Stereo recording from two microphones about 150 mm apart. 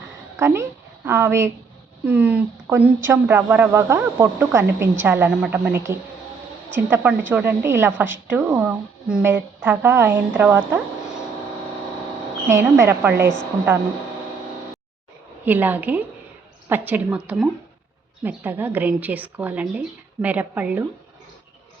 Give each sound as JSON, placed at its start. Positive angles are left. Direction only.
{"t": 0.3, "sound": "a woman's voice", "side_deg": -20}
{"t": 12.5, "sound": "speech", "side_deg": -20}
{"t": 15.4, "sound": "speech", "side_deg": -10}